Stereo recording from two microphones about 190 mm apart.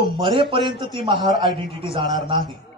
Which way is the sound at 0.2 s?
25° right (ahead or behind).